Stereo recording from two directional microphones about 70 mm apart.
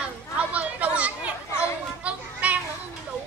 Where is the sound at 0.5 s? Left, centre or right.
Right.